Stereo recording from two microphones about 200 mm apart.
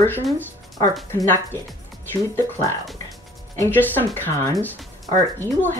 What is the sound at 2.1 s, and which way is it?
Speech, 10° left (ahead or behind).